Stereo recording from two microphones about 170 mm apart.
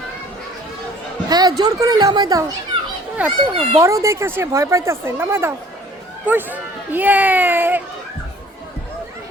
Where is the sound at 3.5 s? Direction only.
35° right (ahead or behind).